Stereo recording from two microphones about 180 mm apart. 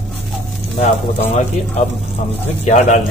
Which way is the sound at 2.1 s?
40° left (ahead or behind).